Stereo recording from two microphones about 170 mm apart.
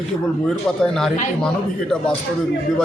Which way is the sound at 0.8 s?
5° left (ahead or behind).